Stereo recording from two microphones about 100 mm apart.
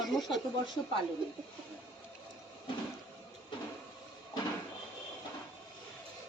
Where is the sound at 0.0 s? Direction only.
Centre (ahead or behind).